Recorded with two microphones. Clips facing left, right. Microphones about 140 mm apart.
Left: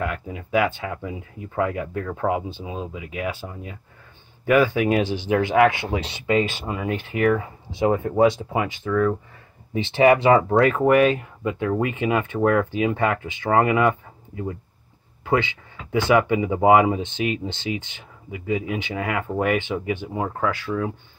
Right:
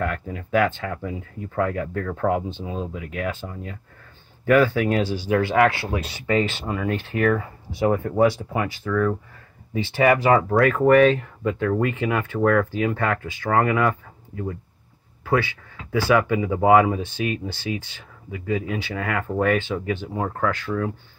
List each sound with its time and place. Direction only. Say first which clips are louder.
0.0 s speech: right 1 dB; 10° left (ahead or behind)